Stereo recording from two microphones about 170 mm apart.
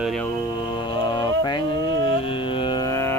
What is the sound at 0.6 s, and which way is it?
Music, 30° left (ahead or behind).